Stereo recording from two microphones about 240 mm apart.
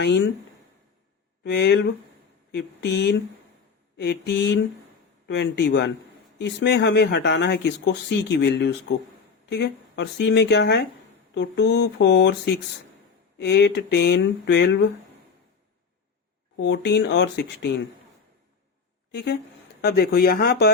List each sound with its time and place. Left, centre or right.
1.5 s speech: left
13.4 s speech: left
16.6 s speech: left
19.1 s speech: left